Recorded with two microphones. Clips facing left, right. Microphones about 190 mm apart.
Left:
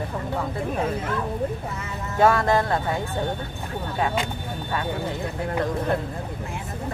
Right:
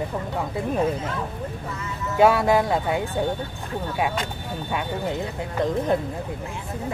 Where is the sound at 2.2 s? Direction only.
10° right (ahead or behind).